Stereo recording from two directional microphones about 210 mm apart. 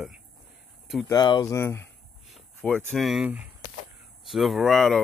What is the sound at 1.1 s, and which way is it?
Speech, 20° left (ahead or behind).